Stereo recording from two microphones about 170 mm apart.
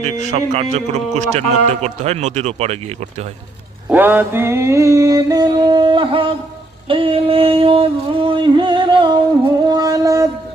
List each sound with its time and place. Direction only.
0.0 s a man's voice: 45° right (ahead or behind)
3.8 s mantra: 10° right (ahead or behind); by 6.3 s 30° right (ahead or behind)
6.8 s a sound: 30° right (ahead or behind)